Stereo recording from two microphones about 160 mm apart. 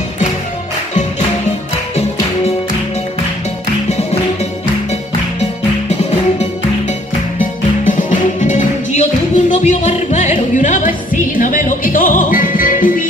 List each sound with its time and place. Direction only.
7.8 s music: 55° left (ahead or behind)